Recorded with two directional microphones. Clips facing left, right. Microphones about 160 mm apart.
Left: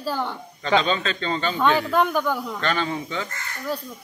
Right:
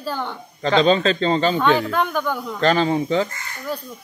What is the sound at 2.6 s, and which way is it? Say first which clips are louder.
Speech: right 11 dB; 35° right (ahead or behind).